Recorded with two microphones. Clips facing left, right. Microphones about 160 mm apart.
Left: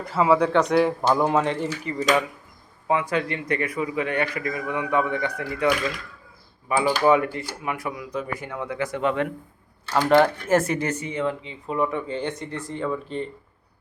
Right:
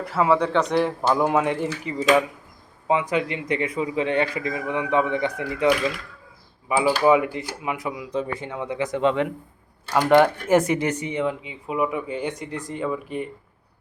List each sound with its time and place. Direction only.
0.0 s a man's voice: centre (ahead or behind)